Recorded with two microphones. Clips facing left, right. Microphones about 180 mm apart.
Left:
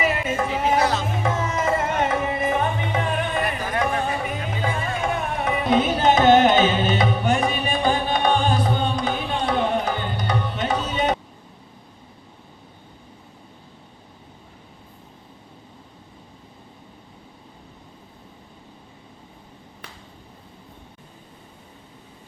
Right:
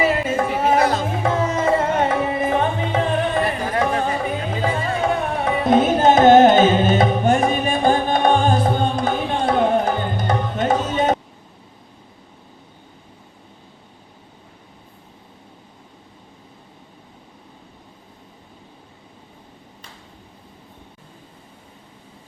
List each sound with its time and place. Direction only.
0.0 s a sound: 35° right (ahead or behind)
1.2 s music: 30° right (ahead or behind)
5.7 s music: 45° right (ahead or behind)